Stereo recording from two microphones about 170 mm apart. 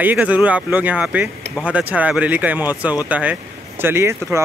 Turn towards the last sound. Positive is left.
turn(degrees=-15)  # may be behind; listen again after turning